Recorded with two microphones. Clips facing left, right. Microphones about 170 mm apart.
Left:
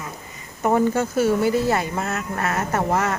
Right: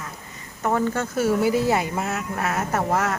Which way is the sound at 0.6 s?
15° left (ahead or behind).